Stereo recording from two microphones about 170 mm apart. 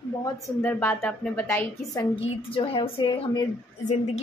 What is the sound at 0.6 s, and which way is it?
Speech, 10° left (ahead or behind).